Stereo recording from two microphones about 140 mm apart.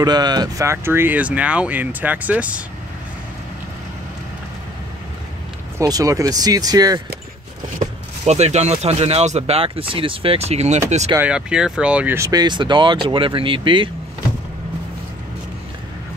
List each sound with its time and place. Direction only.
0.0 s speech: 30° right (ahead or behind); by 2.6 s 10° right (ahead or behind)
5.8 s speech: 25° right (ahead or behind)
7.8 s speech: 50° right (ahead or behind)
11.1 s speech: 10° right (ahead or behind)
12.2 s speech: 30° right (ahead or behind)